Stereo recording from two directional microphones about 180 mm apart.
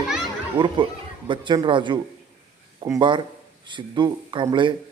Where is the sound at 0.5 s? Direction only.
25° right (ahead or behind).